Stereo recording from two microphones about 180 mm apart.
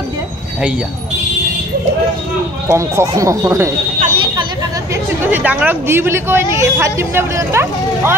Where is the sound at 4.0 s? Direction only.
35° right (ahead or behind).